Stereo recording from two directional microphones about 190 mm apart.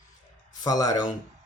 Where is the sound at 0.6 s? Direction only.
20° left (ahead or behind).